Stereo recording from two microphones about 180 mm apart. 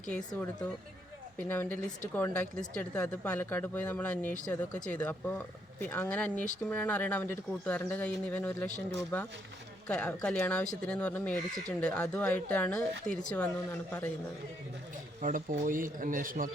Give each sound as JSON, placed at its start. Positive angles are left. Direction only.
{"t": 0.1, "sound": "speech", "side_deg": 10}
{"t": 15.2, "sound": "speech", "side_deg": -45}